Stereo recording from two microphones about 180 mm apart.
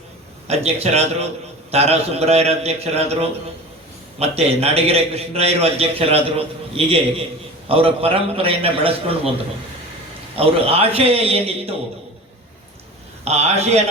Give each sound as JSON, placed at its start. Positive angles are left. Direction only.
{"t": 0.4, "sound": "a man's voice", "side_deg": -35}
{"t": 10.3, "sound": "a man's voice", "side_deg": -30}
{"t": 13.2, "sound": "a man's voice", "side_deg": -35}